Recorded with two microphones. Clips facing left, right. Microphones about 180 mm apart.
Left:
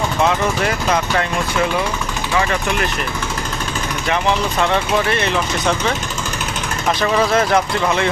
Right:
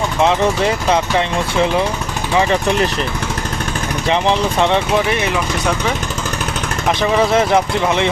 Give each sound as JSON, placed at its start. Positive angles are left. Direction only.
{"t": 0.3, "sound": "speech", "side_deg": -25}
{"t": 2.4, "sound": "speech", "side_deg": -25}
{"t": 4.1, "sound": "speech", "side_deg": -25}
{"t": 7.0, "sound": "speech", "side_deg": -20}